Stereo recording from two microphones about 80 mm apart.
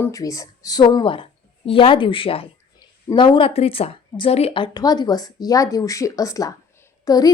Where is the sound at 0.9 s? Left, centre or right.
Left.